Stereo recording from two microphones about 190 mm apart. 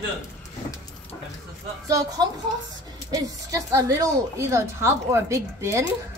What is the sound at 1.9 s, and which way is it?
A woman's voice, 20° right (ahead or behind).